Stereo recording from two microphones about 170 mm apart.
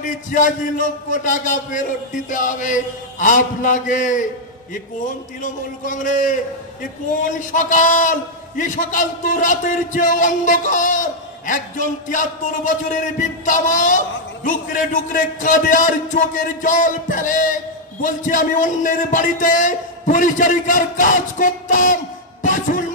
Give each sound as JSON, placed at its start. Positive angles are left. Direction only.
{"t": 0.0, "sound": "a man's voice", "side_deg": 50}
{"t": 5.4, "sound": "a man's voice", "side_deg": 50}